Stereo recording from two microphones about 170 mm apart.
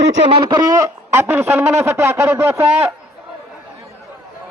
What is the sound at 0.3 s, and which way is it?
A man's voice, 25° right (ahead or behind).